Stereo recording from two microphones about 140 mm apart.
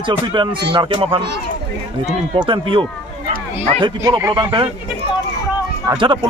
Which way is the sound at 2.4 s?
35° right (ahead or behind).